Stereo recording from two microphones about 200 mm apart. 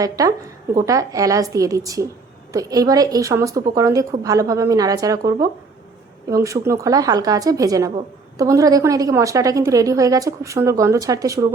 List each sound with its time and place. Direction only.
0.0 s a woman's voice: 15° right (ahead or behind)